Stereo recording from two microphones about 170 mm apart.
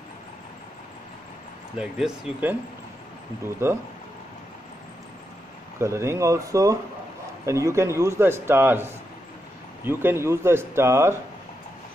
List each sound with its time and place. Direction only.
1.8 s speech: 5° right (ahead or behind)
3.6 s a man's voice: 15° right (ahead or behind)
5.8 s a man's voice: 15° right (ahead or behind)